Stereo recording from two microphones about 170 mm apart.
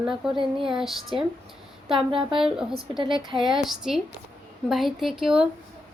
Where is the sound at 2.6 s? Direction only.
5° right (ahead or behind).